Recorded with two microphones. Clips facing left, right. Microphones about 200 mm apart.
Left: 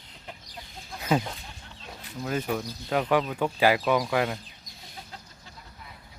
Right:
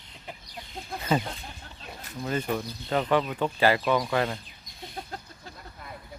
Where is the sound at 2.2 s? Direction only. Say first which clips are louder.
Even; 5° left (ahead or behind).